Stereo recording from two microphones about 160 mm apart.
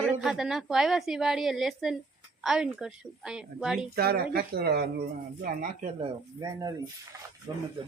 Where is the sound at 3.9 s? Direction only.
75° right (ahead or behind).